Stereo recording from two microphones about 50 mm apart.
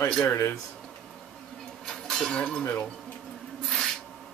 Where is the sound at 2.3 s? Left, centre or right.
Left.